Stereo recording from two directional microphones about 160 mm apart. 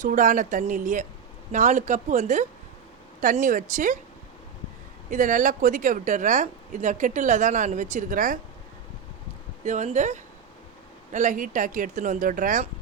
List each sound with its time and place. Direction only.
0.0 s a woman's voice: 55° right (ahead or behind)
5.1 s a woman's voice: 55° right (ahead or behind)
9.6 s a woman's voice: 45° right (ahead or behind)